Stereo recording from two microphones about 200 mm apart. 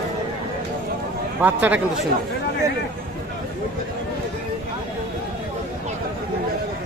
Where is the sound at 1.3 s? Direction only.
10° right (ahead or behind).